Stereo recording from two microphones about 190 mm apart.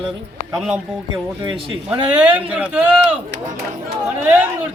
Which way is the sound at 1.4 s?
30° right (ahead or behind).